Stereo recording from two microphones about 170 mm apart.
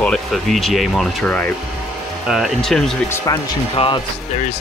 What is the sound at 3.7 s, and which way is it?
Speech, 35° left (ahead or behind).